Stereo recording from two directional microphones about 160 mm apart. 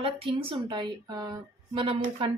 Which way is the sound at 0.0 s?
35° right (ahead or behind).